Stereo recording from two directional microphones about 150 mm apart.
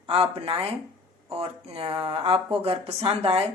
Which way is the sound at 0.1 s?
40° right (ahead or behind).